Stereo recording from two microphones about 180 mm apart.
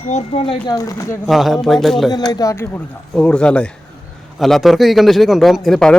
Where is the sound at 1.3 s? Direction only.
Centre (ahead or behind).